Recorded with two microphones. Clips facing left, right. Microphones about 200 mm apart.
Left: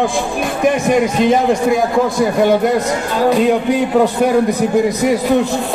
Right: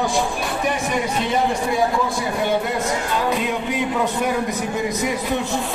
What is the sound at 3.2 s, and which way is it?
A man's voice, 35° left (ahead or behind).